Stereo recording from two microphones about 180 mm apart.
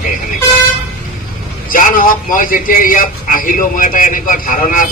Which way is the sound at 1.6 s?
50° left (ahead or behind).